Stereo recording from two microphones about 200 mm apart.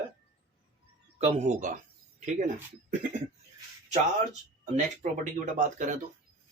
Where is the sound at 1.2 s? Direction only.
40° right (ahead or behind).